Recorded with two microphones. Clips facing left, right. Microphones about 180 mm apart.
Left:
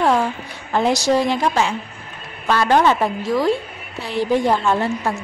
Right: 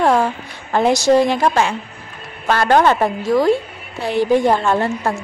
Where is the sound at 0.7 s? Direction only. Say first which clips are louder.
Right 4 dB; 50° right (ahead or behind).